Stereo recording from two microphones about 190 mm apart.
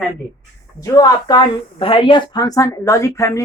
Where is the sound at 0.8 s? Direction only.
20° left (ahead or behind).